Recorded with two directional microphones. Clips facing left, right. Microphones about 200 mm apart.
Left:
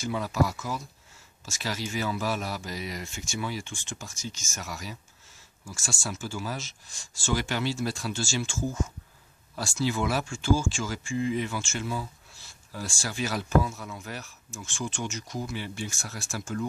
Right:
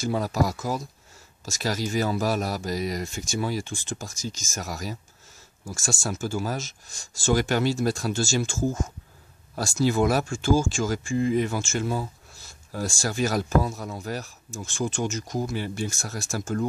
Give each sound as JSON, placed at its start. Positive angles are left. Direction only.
{"t": 0.0, "sound": "speech", "side_deg": -40}